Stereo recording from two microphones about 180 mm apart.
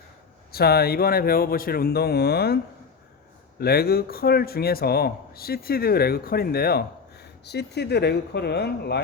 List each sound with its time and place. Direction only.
0.5 s a man's voice: 60° left (ahead or behind)
3.6 s a man's voice: 60° left (ahead or behind)